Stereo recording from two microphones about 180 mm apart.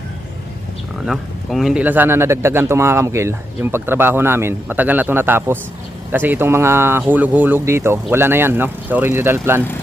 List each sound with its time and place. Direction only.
1.0 s speech: centre (ahead or behind)